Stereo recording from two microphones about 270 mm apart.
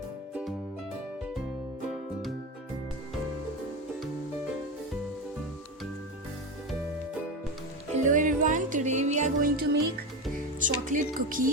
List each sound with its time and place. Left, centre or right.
8.1 s music: right
10.6 s speech: right